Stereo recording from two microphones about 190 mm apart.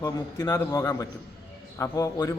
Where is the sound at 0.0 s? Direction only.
20° left (ahead or behind).